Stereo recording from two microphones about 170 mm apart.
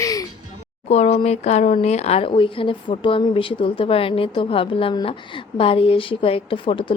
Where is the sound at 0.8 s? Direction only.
40° left (ahead or behind).